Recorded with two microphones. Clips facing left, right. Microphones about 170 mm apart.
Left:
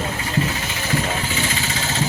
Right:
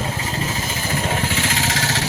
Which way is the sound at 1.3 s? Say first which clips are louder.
Right 2 dB; 80° right.